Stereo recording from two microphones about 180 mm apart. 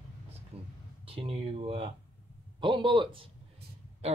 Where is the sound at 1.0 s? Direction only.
30° right (ahead or behind).